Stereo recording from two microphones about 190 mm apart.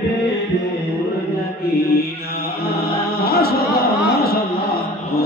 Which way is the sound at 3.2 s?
55° left (ahead or behind).